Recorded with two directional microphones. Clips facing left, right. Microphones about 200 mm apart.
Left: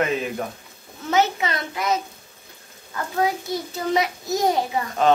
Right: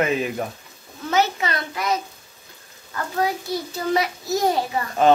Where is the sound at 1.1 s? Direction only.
20° left (ahead or behind).